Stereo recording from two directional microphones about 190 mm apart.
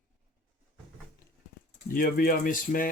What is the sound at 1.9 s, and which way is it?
Speech, 50° left (ahead or behind).